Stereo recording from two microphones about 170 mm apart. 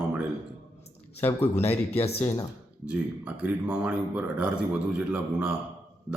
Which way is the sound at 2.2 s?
20° left (ahead or behind).